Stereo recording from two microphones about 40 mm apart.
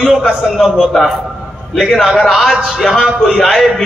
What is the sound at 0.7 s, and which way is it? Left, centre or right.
A man's voice, centre.